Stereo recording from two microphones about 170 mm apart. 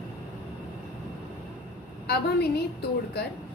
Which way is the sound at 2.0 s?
70° left (ahead or behind).